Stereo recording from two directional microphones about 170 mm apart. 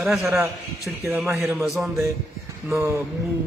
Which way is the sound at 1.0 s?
15° right (ahead or behind).